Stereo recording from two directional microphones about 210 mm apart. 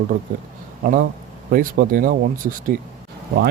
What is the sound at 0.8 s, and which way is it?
Speech, 40° right (ahead or behind).